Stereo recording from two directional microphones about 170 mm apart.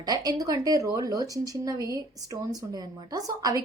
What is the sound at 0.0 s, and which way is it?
Speech, 25° right (ahead or behind).